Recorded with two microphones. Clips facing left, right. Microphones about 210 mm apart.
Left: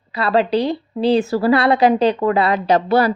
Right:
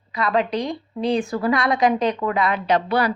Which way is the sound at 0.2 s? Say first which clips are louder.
Left 5 dB; 35° left (ahead or behind).